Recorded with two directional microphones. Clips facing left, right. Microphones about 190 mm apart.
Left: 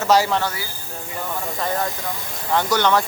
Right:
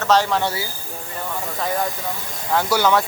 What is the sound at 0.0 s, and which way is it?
Speech, 10° left (ahead or behind).